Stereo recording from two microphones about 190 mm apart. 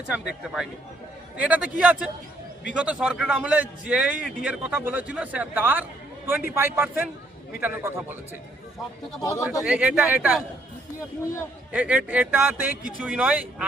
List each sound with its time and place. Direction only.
0.1 s a man's voice: 5° right (ahead or behind)
9.2 s speech: 15° left (ahead or behind)
9.6 s speech: 5° right (ahead or behind)
11.7 s a man's voice: 5° right (ahead or behind)